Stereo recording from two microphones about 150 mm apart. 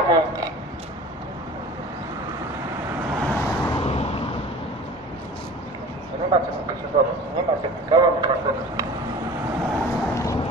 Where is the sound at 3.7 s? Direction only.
40° left (ahead or behind).